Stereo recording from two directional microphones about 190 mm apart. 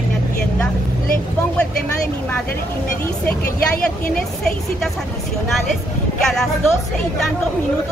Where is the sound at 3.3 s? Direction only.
50° left (ahead or behind).